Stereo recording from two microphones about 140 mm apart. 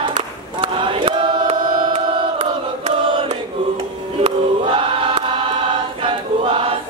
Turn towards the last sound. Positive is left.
turn(degrees=-40)  # may be behind; listen again after turning